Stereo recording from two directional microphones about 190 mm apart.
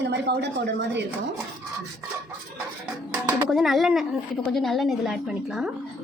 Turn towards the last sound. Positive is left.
turn(degrees=-5)  # may be behind; listen again after turning